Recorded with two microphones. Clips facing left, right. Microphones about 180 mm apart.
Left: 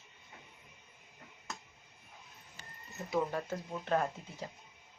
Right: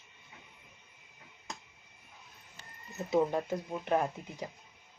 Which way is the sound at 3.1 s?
20° right (ahead or behind).